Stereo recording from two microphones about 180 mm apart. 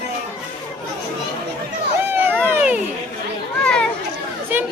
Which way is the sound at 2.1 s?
10° right (ahead or behind).